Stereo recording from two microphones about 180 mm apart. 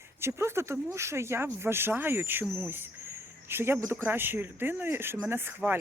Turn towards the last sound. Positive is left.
turn(degrees=-10)  # may be behind; listen again after turning